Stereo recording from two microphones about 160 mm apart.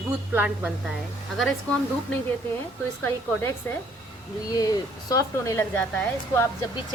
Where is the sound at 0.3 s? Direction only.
10° right (ahead or behind).